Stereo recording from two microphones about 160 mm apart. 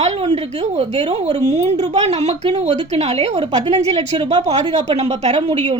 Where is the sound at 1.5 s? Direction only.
45° right (ahead or behind).